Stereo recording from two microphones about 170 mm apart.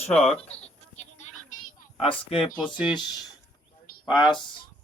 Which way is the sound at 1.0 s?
45° left (ahead or behind).